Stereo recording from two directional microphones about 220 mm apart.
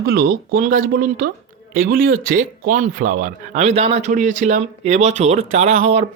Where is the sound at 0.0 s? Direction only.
45° right (ahead or behind).